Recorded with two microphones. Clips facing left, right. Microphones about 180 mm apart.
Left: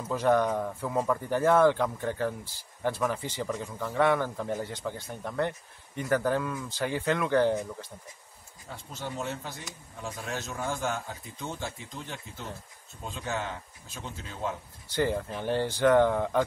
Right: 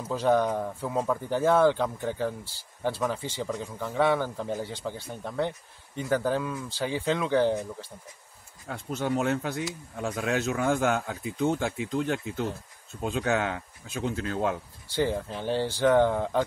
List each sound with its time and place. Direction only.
0.1 s speech: 5° right (ahead or behind)
8.6 s speech: 60° right (ahead or behind)
15.0 s speech: 5° right (ahead or behind)